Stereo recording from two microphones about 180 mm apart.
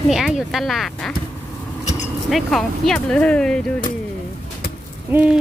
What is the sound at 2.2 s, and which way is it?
Speech, centre (ahead or behind).